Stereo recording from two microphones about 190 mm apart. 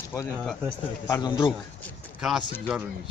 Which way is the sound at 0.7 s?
20° left (ahead or behind).